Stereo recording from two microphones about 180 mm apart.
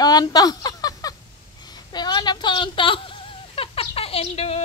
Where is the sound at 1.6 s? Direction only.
25° left (ahead or behind).